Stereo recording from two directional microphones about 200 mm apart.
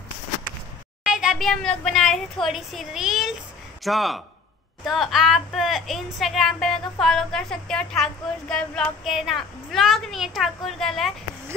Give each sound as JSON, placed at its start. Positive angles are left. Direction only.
{"t": 1.0, "sound": "a woman's voice", "side_deg": -5}